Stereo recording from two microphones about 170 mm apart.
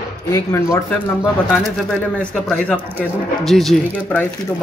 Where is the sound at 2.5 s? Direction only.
10° left (ahead or behind).